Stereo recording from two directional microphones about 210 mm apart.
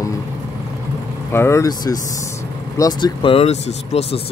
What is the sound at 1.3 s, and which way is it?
Speech, 15° left (ahead or behind).